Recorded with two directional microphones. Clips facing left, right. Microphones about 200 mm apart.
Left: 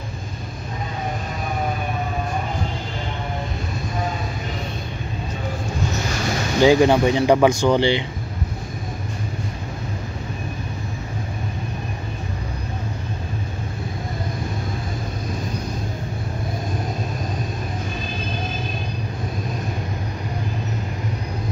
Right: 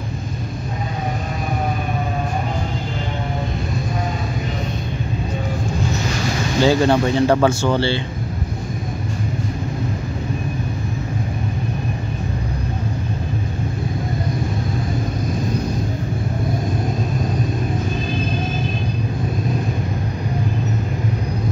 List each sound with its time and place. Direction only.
6.6 s speech: 15° left (ahead or behind)